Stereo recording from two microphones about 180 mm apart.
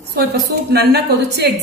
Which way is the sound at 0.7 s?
60° right (ahead or behind).